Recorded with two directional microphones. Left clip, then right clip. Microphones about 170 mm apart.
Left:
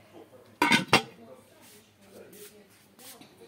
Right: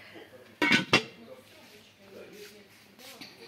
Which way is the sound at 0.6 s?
90° left.